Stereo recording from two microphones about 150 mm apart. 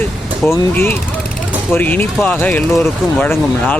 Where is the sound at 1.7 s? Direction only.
10° left (ahead or behind).